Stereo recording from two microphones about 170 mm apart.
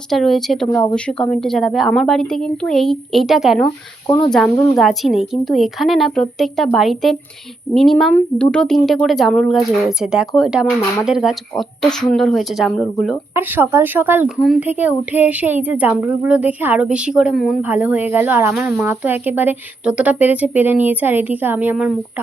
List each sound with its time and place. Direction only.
0.1 s speech: centre (ahead or behind)
4.0 s speech: 25° left (ahead or behind)
4.3 s speech: 5° left (ahead or behind)
13.3 s a woman's voice: 15° right (ahead or behind)